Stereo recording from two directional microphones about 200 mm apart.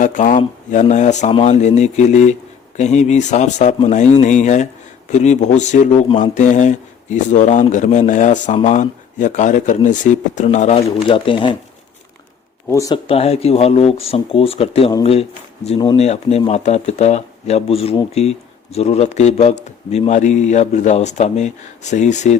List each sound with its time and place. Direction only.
0.0 s speech: 40° left (ahead or behind)
12.6 s speech: 15° left (ahead or behind)
13.1 s speech: 30° left (ahead or behind)